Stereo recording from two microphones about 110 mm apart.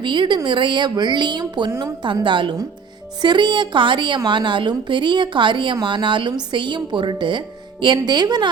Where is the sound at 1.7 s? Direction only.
30° right (ahead or behind).